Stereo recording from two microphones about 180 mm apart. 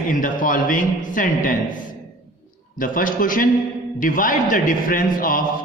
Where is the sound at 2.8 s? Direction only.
50° left (ahead or behind).